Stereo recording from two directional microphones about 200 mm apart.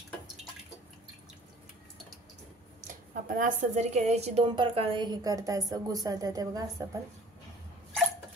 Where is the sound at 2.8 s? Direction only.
40° right (ahead or behind); by 6.8 s 20° right (ahead or behind).